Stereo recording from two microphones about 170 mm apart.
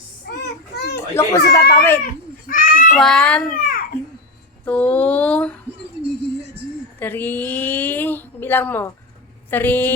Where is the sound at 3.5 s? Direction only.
50° left (ahead or behind).